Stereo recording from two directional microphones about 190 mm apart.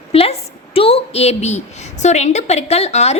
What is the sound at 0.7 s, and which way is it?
A woman's voice, 30° left (ahead or behind).